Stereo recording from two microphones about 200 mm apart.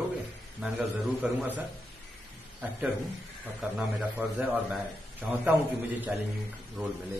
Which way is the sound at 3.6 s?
5° right (ahead or behind).